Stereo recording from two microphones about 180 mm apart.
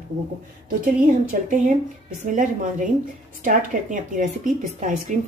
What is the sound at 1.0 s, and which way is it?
Speech, 50° right (ahead or behind).